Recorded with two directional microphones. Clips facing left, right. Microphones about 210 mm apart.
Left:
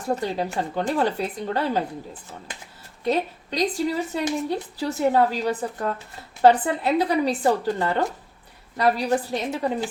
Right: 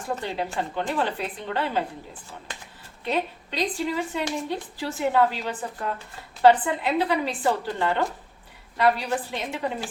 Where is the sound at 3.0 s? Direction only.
40° left (ahead or behind).